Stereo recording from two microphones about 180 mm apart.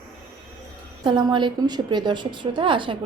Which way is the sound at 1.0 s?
25° right (ahead or behind).